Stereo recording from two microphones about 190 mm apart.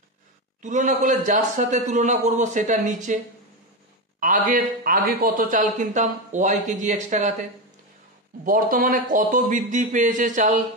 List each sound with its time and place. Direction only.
0.6 s a man's voice: 40° right (ahead or behind)
4.2 s a man's voice: 45° right (ahead or behind)
8.5 s a man's voice: 45° right (ahead or behind)